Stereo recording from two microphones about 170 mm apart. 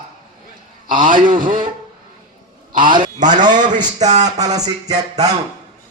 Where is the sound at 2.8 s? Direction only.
50° right (ahead or behind).